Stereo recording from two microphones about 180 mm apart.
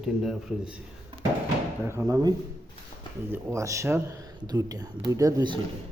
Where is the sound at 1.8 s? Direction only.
15° right (ahead or behind).